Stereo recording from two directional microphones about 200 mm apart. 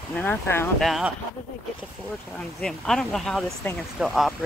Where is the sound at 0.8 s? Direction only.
Centre (ahead or behind).